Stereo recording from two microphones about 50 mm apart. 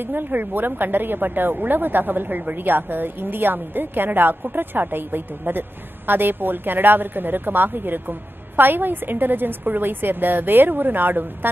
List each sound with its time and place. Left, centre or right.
0.0 s a woman's voice: right